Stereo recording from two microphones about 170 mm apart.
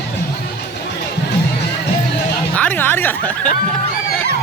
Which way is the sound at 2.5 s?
10° left (ahead or behind).